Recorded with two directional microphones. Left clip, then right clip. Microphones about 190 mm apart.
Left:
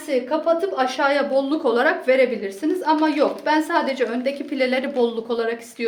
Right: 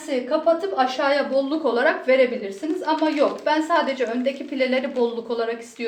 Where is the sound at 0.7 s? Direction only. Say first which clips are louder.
Left 1 dB; 50° left (ahead or behind).